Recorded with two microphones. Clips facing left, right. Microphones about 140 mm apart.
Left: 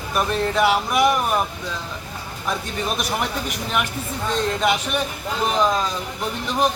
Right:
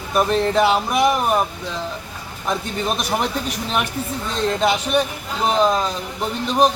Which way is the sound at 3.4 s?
30° right (ahead or behind).